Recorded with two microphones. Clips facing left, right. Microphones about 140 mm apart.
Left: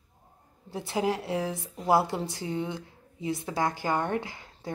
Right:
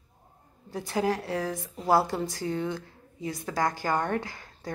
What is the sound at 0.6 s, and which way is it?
A woman's voice, 25° left (ahead or behind).